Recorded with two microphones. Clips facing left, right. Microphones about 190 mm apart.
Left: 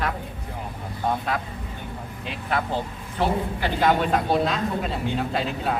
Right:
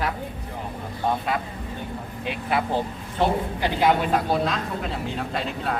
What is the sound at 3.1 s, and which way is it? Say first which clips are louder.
Speech: right 1 dB; 15° right (ahead or behind).